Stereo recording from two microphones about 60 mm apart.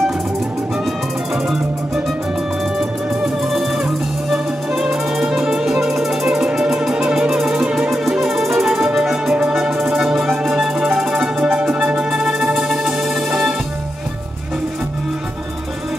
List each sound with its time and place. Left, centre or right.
3.4 s music: centre
11.4 s music: right
12.1 s music: centre